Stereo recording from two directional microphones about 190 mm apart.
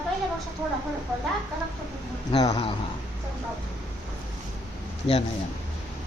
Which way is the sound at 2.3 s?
20° left (ahead or behind).